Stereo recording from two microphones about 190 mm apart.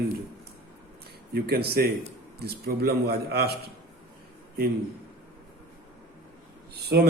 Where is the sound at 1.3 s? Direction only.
55° right (ahead or behind).